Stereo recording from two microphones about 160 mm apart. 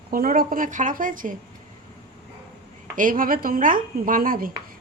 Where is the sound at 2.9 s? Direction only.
60° right (ahead or behind).